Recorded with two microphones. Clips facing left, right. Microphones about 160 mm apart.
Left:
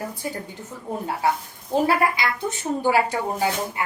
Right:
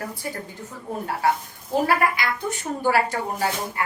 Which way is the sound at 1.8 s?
20° left (ahead or behind).